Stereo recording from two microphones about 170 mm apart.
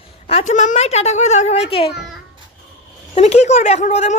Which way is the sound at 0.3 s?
40° left (ahead or behind).